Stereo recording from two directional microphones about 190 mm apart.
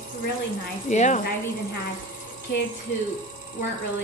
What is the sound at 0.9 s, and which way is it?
Speech, 40° left (ahead or behind).